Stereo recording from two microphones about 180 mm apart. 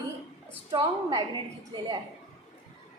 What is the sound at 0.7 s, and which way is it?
Speech, 25° right (ahead or behind).